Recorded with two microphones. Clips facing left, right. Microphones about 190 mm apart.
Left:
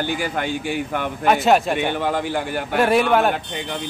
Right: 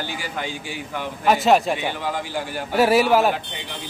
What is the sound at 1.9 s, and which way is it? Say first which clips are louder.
Speech: left 5 dB; 60° left (ahead or behind).